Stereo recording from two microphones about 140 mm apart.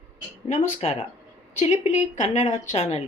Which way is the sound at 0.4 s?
55° left (ahead or behind).